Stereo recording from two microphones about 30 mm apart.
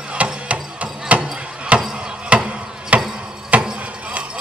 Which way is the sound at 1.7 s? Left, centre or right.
Right.